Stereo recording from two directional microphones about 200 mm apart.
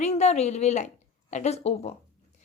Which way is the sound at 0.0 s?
35° left (ahead or behind).